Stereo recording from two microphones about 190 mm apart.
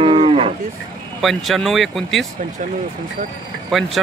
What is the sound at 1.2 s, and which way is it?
Speech, centre (ahead or behind).